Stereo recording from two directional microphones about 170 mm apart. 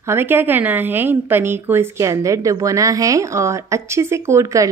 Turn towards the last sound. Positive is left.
turn(degrees=-15)  # may be behind; listen again after turning